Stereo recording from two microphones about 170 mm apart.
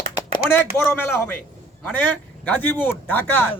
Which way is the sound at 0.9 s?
10° left (ahead or behind).